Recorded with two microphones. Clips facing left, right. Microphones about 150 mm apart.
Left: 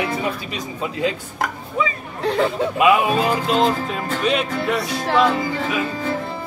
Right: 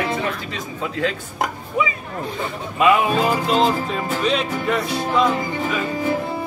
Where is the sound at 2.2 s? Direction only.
90° left.